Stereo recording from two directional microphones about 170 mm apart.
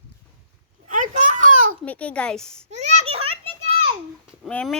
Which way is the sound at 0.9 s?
50° right (ahead or behind).